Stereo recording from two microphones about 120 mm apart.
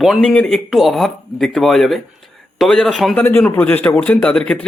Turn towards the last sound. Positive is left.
turn(degrees=10)  # may be behind; listen again after turning